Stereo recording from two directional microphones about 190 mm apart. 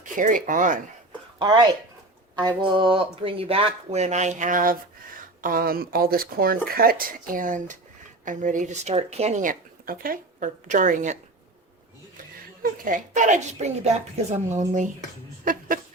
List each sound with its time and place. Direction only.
0.0 s speech: 45° right (ahead or behind)
1.4 s speech: 20° right (ahead or behind); by 11.2 s 40° right (ahead or behind)
12.6 s speech: 45° right (ahead or behind)